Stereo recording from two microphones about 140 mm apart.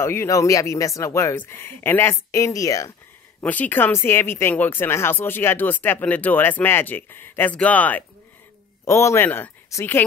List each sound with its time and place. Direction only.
0.0 s speech: 20° left (ahead or behind)
3.3 s speech: 10° left (ahead or behind)